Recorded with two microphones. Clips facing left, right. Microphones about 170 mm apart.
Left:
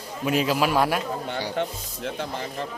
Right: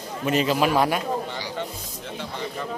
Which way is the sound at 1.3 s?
60° left (ahead or behind).